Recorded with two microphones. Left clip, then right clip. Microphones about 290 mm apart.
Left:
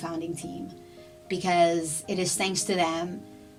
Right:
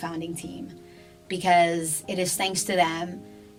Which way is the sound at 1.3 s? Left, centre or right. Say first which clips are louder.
Right 2 dB; right.